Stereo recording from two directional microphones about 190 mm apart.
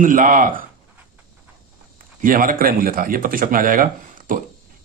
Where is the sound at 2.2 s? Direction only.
45° right (ahead or behind).